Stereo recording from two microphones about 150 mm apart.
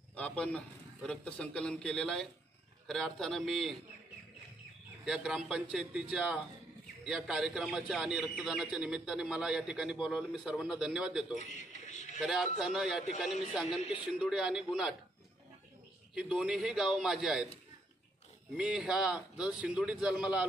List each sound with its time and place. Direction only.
0.1 s a man's voice: 10° left (ahead or behind)
5.0 s a man's voice: 5° right (ahead or behind)
11.3 s a sound: 50° left (ahead or behind)
12.2 s a man's voice: 5° right (ahead or behind)
16.2 s a man's voice: 5° right (ahead or behind)
18.6 s a man's voice: 5° right (ahead or behind)